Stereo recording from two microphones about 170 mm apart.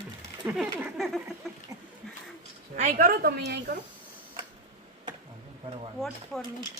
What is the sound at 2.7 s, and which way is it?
Speech, 45° right (ahead or behind).